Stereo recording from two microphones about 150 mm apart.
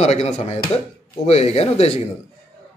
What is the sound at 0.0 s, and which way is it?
A man's voice, 45° left (ahead or behind).